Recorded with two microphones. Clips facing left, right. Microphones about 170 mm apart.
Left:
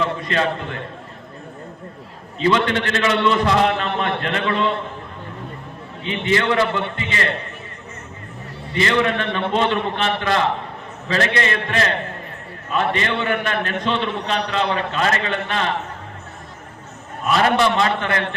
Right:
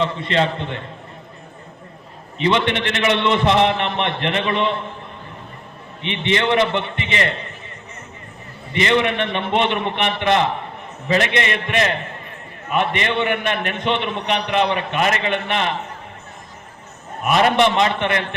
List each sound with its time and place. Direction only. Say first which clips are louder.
0.0 s a man's voice: right 1 dB; 25° right (ahead or behind)
2.4 s a man's voice: even; 20° right (ahead or behind)
6.0 s a man's voice: even; 20° right (ahead or behind)
8.7 s a man's voice: right 1 dB; 20° right (ahead or behind)
17.6 s a man's voice: right 2 dB; 20° right (ahead or behind)